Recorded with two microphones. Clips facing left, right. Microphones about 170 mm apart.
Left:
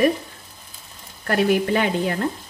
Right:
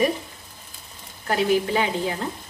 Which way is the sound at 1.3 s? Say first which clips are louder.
Left 2 dB; 60° left (ahead or behind).